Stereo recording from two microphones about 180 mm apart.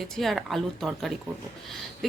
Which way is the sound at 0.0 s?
Centre (ahead or behind).